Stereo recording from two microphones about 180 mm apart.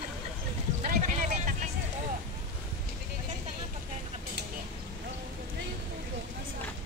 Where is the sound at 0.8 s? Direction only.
45° right (ahead or behind).